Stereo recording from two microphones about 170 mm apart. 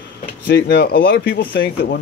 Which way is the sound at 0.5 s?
90° left.